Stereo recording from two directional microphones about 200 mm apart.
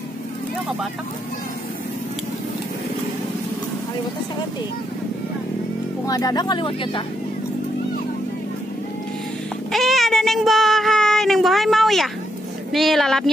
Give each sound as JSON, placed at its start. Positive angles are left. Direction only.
{"t": 6.0, "sound": "speech", "side_deg": 20}
{"t": 9.7, "sound": "child singing", "side_deg": 0}
{"t": 12.7, "sound": "a woman's voice", "side_deg": 0}